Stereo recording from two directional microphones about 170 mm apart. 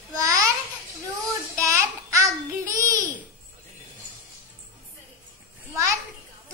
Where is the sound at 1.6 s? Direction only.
20° right (ahead or behind).